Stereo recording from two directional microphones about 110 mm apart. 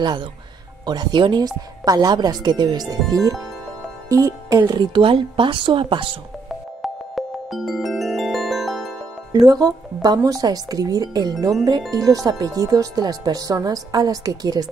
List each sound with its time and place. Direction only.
0.0 s speech: 40° right (ahead or behind)
6.8 s music: centre (ahead or behind)
9.3 s speech: 35° right (ahead or behind)